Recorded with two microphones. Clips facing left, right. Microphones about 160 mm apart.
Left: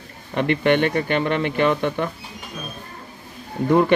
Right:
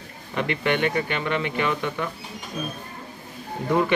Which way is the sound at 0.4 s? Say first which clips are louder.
Left 5 dB; 35° left (ahead or behind).